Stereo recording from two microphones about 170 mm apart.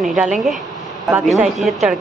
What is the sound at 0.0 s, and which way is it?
Speech, centre (ahead or behind).